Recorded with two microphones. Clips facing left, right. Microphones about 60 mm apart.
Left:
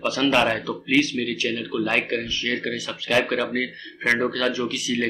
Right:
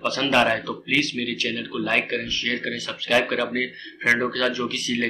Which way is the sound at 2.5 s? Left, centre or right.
Centre.